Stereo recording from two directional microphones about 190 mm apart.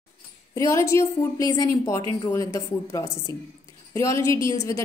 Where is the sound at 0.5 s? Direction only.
15° left (ahead or behind).